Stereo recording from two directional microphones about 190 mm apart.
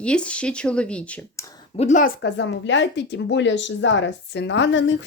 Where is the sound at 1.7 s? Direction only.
35° left (ahead or behind).